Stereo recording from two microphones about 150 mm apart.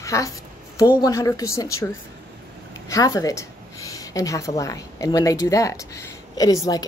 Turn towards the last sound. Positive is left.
turn(degrees=25)  # may be behind; listen again after turning